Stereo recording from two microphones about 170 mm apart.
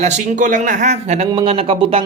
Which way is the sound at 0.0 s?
45° right (ahead or behind).